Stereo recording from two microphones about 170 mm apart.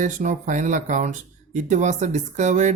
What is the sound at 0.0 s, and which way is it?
Speech, 50° right (ahead or behind).